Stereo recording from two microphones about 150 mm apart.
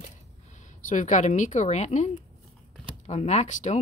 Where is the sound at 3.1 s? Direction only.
45° left (ahead or behind).